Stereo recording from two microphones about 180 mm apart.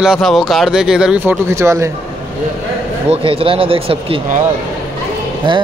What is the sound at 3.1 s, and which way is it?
Speech, 30° right (ahead or behind).